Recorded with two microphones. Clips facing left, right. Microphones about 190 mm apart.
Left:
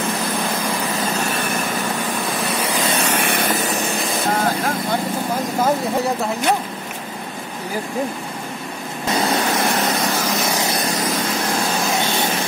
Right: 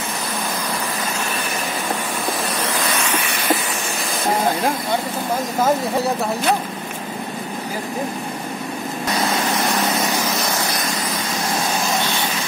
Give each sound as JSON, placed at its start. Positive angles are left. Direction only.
{"t": 3.3, "sound": "vehicle", "side_deg": 50}